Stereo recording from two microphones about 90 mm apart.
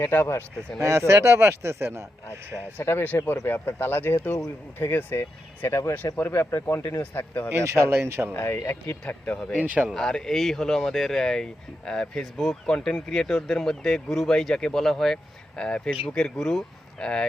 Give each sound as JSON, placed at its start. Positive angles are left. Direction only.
{"t": 0.0, "sound": "speech", "side_deg": 30}
{"t": 0.8, "sound": "speech", "side_deg": -30}
{"t": 2.7, "sound": "speech", "side_deg": 20}
{"t": 6.1, "sound": "speech", "side_deg": 20}
{"t": 7.5, "sound": "speech", "side_deg": -30}
{"t": 8.3, "sound": "speech", "side_deg": 25}
{"t": 9.6, "sound": "speech", "side_deg": -15}
{"t": 9.9, "sound": "speech", "side_deg": 5}